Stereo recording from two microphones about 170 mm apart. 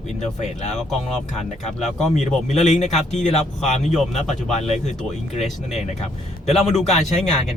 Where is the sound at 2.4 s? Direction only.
45° left (ahead or behind).